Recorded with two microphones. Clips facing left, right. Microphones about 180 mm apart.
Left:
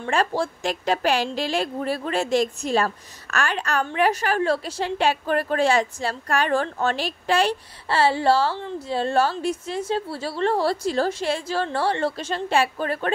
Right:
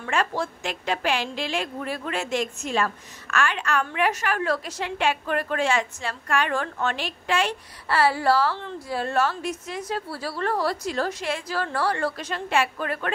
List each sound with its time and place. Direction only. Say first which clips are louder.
0.0 s a woman's voice: left 3 dB; 30° left (ahead or behind)